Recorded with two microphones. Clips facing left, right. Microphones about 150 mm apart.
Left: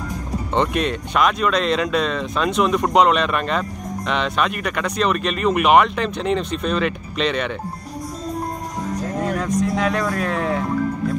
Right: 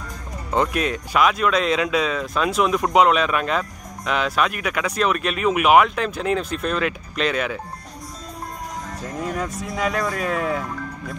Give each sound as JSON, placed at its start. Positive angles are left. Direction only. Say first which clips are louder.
{"t": 0.5, "sound": "speech", "louder": "left 1 dB", "side_deg": -5}
{"t": 9.4, "sound": "speech", "louder": "left 6 dB", "side_deg": -5}